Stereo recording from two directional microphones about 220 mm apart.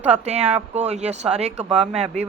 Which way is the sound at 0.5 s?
30° right (ahead or behind).